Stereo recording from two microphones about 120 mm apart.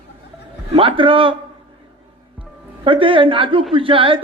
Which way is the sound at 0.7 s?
45° right (ahead or behind).